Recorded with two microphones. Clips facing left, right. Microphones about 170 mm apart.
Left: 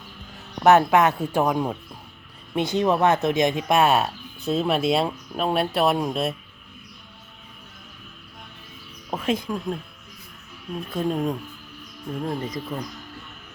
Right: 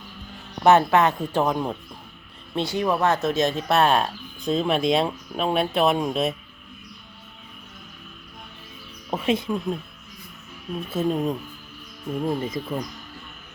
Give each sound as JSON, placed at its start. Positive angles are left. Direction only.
{"t": 0.6, "sound": "speech", "side_deg": 10}
{"t": 2.6, "sound": "speech", "side_deg": 20}
{"t": 9.0, "sound": "speech", "side_deg": 0}
{"t": 12.2, "sound": "speech", "side_deg": -10}